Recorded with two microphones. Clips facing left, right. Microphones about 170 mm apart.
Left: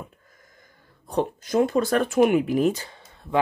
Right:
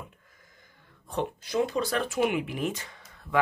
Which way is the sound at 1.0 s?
40° left (ahead or behind).